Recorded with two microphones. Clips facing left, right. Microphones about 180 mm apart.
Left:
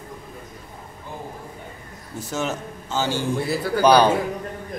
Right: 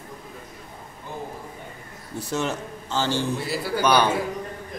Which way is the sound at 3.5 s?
45° left (ahead or behind).